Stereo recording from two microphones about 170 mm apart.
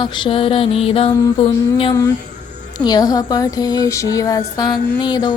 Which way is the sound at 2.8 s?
20° left (ahead or behind).